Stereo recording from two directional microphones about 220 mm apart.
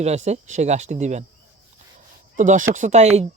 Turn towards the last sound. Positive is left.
turn(degrees=-30)  # may be behind; listen again after turning